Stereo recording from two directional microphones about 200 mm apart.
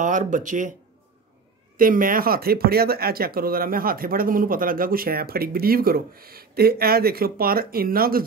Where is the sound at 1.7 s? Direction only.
45° right (ahead or behind).